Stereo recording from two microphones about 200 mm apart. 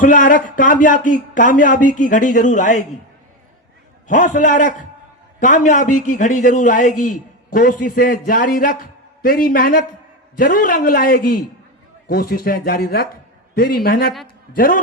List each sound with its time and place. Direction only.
0.0 s a man's voice: 40° left (ahead or behind)
4.1 s a man's voice: 40° left (ahead or behind)